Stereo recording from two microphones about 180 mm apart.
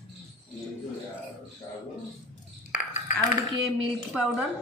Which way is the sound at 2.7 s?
40° left (ahead or behind).